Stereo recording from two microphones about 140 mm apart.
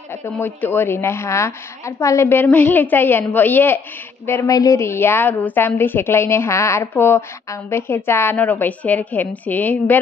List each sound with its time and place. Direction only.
0.2 s a woman's voice: 15° left (ahead or behind)